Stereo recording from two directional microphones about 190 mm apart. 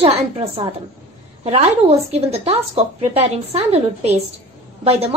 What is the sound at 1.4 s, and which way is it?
A woman's voice, 30° right (ahead or behind).